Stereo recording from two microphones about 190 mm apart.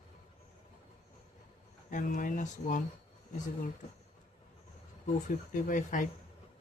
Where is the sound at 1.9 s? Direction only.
40° left (ahead or behind).